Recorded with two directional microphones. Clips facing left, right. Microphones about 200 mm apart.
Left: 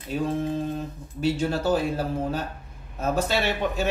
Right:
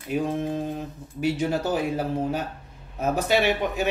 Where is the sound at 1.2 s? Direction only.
15° right (ahead or behind).